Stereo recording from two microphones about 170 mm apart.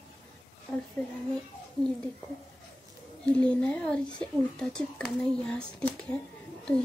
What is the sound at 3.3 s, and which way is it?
Speech, 5° left (ahead or behind).